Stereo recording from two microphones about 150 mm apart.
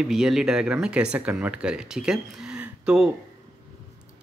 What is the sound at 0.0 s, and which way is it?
Speech, 5° right (ahead or behind).